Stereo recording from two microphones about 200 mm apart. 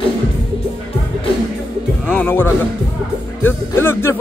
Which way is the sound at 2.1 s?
10° left (ahead or behind).